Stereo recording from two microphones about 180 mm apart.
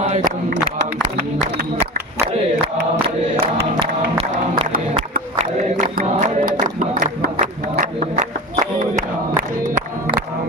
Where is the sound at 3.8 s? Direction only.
30° right (ahead or behind).